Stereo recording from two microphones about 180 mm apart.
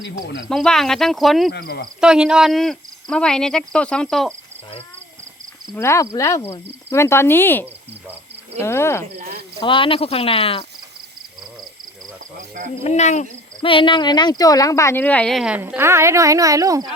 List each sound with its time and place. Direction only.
0.4 s speech: 5° left (ahead or behind)
1.5 s speech: 65° left (ahead or behind)
2.0 s speech: 5° right (ahead or behind)
5.7 s speech: 15° left (ahead or behind)
9.6 s speech: 30° left (ahead or behind)
12.8 s speech: 40° left (ahead or behind)
13.6 s speech: 30° left (ahead or behind); by 16.9 s 20° right (ahead or behind)